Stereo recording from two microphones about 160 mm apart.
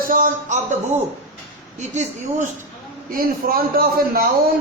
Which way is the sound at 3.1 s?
70° right (ahead or behind).